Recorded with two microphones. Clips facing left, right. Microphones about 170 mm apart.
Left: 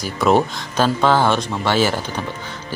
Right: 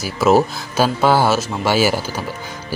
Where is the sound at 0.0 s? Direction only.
5° right (ahead or behind).